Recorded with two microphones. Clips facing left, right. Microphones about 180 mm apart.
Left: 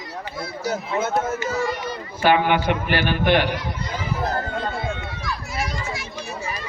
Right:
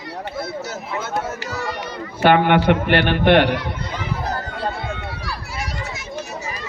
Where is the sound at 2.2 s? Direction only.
60° right (ahead or behind).